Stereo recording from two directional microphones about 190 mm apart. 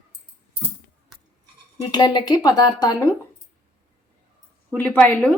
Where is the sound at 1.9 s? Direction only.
20° left (ahead or behind).